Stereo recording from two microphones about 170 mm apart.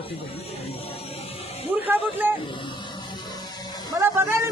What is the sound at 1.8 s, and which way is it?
Speech, 10° right (ahead or behind).